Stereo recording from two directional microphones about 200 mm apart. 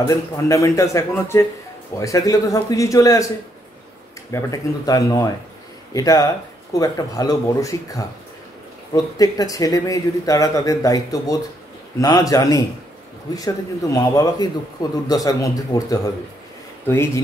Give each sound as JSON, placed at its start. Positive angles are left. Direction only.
{"t": 0.0, "sound": "speech", "side_deg": 15}
{"t": 4.3, "sound": "speech", "side_deg": 20}
{"t": 13.9, "sound": "speech", "side_deg": 15}